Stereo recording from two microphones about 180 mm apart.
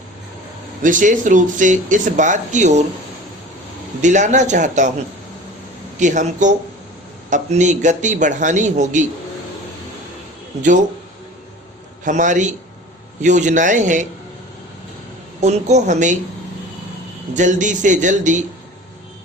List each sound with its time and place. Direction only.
0.8 s speech: 45° right (ahead or behind)
4.0 s a man's voice: 40° right (ahead or behind)
6.0 s speech: 45° right (ahead or behind)
12.0 s speech: 45° right (ahead or behind)
15.4 s a man's voice: 40° right (ahead or behind)
17.3 s speech: 45° right (ahead or behind)